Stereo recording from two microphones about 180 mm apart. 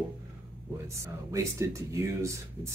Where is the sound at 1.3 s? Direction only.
15° right (ahead or behind).